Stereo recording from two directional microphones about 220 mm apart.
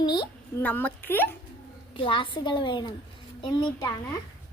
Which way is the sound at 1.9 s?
25° left (ahead or behind).